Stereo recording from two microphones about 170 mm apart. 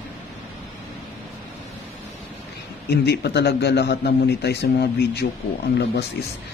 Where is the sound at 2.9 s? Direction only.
75° left (ahead or behind).